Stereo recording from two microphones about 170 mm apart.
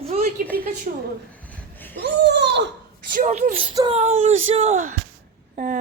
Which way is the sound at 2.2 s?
90° right.